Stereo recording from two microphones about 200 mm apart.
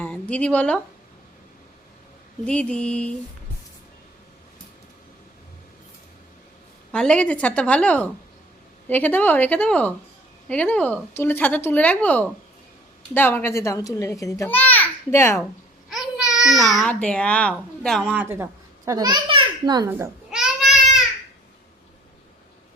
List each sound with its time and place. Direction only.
0.0 s speech: 5° left (ahead or behind)
2.5 s mantra: 5° left (ahead or behind)
6.9 s a child's voice: 5° left (ahead or behind)
15.9 s a child's voice: centre (ahead or behind)
18.9 s a child's voice: 20° right (ahead or behind)
19.9 s babbling: 5° right (ahead or behind)